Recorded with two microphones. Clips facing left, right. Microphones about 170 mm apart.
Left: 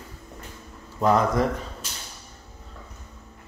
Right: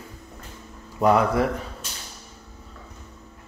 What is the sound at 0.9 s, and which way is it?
Speech, 10° right (ahead or behind).